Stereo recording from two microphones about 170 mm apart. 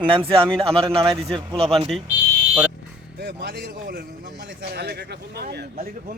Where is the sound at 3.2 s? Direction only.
75° right (ahead or behind).